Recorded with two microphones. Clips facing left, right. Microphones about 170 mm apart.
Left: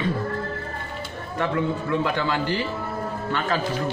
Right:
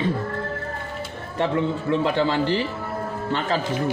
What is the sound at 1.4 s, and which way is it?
Speech, 25° right (ahead or behind).